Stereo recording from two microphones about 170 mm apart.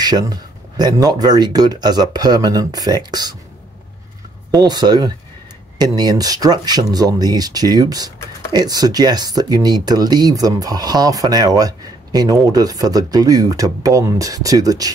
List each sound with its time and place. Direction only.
0.0 s speech: 25° right (ahead or behind)
4.5 s speech: 25° right (ahead or behind)